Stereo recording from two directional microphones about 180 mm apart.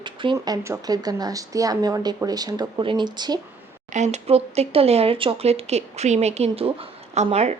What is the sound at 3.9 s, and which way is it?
Speech, 40° right (ahead or behind).